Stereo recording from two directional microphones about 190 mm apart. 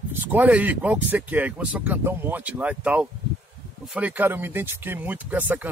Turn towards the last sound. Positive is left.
turn(degrees=-10)  # may be behind; listen again after turning